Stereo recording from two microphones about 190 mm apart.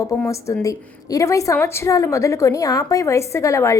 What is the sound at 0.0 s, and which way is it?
A woman's voice, 15° left (ahead or behind).